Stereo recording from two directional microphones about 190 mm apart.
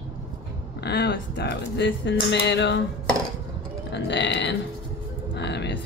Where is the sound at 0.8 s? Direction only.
60° left (ahead or behind).